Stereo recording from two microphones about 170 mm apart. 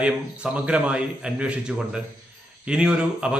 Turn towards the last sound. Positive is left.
turn(degrees=-5)  # may be behind; listen again after turning